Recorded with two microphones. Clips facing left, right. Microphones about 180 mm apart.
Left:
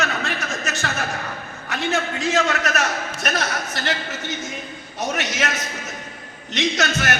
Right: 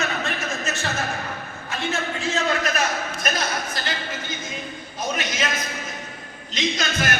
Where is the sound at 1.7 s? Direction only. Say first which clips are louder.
Left 3 dB; 85° left.